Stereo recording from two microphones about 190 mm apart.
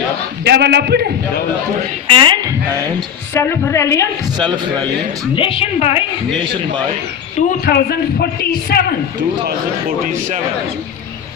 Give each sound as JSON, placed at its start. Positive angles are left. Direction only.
{"t": 0.4, "sound": "a man's voice", "side_deg": -60}
{"t": 2.0, "sound": "a woman's voice", "side_deg": -25}
{"t": 3.3, "sound": "a woman's voice", "side_deg": 10}
{"t": 4.4, "sound": "a man's voice", "side_deg": -25}
{"t": 5.3, "sound": "a woman's voice", "side_deg": 25}
{"t": 7.3, "sound": "speech", "side_deg": 45}
{"t": 10.1, "sound": "speech", "side_deg": -40}